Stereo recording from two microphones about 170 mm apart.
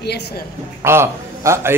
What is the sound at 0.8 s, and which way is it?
Speech, 15° right (ahead or behind).